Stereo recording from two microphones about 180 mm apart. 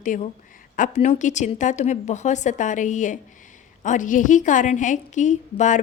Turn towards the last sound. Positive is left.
turn(degrees=40)  # may be behind; listen again after turning